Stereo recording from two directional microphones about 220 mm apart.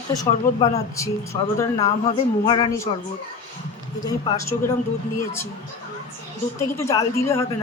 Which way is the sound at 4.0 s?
15° left (ahead or behind).